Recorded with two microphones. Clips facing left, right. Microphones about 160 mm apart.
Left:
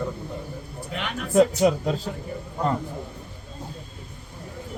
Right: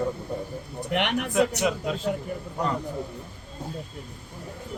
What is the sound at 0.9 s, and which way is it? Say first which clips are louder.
Speech: right 6 dB; 70° right (ahead or behind).